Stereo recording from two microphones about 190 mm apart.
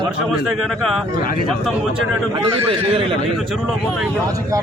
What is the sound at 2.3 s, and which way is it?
Speech, 30° right (ahead or behind).